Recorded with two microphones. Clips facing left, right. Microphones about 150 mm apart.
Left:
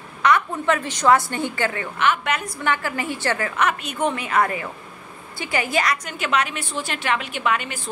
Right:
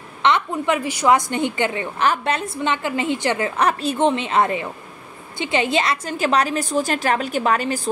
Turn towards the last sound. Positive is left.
turn(degrees=-35)  # may be behind; listen again after turning